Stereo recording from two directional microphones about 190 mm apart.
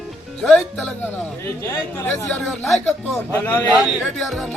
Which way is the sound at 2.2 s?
Centre (ahead or behind).